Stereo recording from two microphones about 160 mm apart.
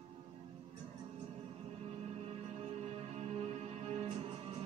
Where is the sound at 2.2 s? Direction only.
40° right (ahead or behind).